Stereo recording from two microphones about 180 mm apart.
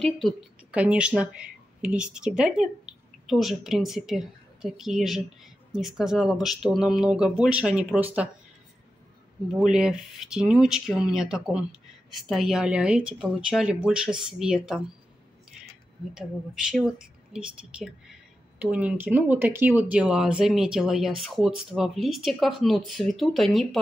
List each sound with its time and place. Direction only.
0.0 s a woman's voice: centre (ahead or behind)
9.6 s a woman's voice: 5° right (ahead or behind)
16.2 s a woman's voice: 5° right (ahead or behind)